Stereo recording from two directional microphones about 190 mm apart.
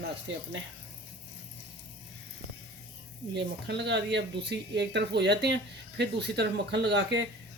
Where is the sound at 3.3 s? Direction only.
65° right (ahead or behind).